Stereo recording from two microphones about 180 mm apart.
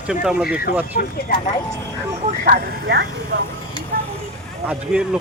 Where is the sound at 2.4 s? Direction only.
60° right (ahead or behind).